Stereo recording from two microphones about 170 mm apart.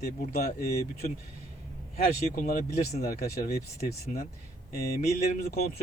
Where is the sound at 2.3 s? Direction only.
55° left (ahead or behind).